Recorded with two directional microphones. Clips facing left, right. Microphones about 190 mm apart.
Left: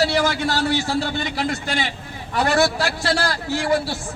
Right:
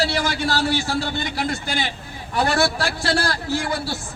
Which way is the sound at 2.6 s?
20° left (ahead or behind).